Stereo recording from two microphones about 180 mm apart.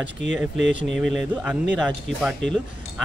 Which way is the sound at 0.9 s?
5° right (ahead or behind).